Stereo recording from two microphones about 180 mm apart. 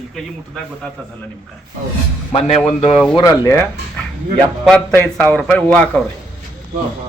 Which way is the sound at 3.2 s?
15° left (ahead or behind).